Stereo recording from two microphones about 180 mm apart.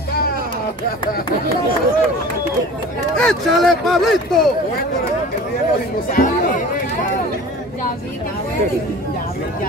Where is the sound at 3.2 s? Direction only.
Centre (ahead or behind).